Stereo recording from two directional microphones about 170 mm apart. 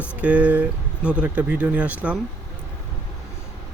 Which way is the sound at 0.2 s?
10° right (ahead or behind).